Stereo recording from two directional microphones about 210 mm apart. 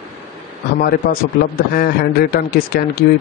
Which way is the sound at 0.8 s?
45° left (ahead or behind).